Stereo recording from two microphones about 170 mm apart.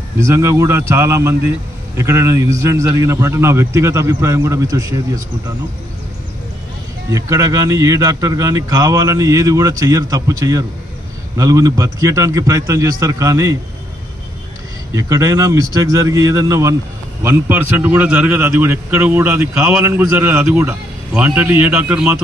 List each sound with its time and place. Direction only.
0.2 s a man's voice: 15° right (ahead or behind)
7.1 s a man's voice: 20° right (ahead or behind)
14.9 s a man's voice: 20° right (ahead or behind)